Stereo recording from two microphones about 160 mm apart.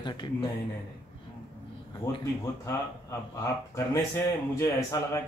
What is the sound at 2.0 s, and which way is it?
Speech, 20° left (ahead or behind).